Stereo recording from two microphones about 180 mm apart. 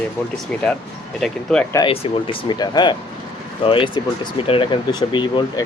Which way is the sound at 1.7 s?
25° left (ahead or behind).